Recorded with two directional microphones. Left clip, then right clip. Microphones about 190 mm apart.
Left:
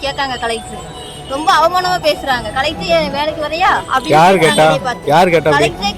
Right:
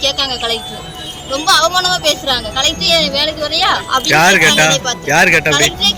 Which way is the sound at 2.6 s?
30° left (ahead or behind).